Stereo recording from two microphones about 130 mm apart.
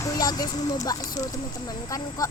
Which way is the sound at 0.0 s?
30° left (ahead or behind).